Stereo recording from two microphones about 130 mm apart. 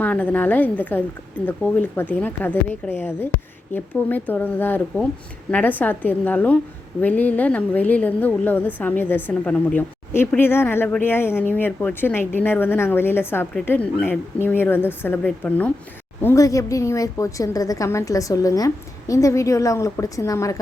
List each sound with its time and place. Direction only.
0.0 s a woman's voice: 10° left (ahead or behind)
16.2 s a woman's voice: 25° left (ahead or behind)